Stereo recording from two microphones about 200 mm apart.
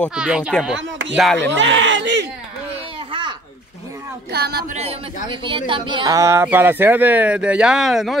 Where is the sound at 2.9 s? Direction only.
25° right (ahead or behind).